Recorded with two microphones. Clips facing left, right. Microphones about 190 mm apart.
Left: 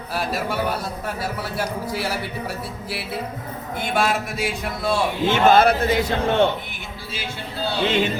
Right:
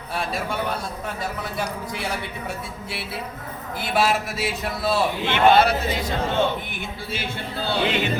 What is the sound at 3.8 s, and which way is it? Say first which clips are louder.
A man's voice: even; 5° right (ahead or behind).